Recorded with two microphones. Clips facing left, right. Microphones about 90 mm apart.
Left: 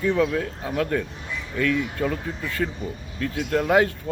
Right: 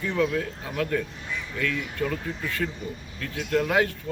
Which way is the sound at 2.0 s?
30° left (ahead or behind).